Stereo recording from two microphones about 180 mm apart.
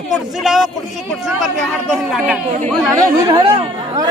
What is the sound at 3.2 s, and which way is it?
Speech, 25° right (ahead or behind).